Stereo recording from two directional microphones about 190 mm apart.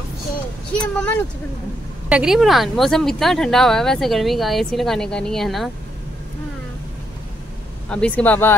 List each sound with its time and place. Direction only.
0.9 s speech: 5° left (ahead or behind)
2.0 s speech: 5° right (ahead or behind)
7.9 s speech: 5° left (ahead or behind)